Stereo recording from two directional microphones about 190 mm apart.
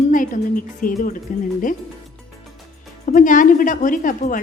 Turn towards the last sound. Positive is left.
turn(degrees=45)  # may be behind; listen again after turning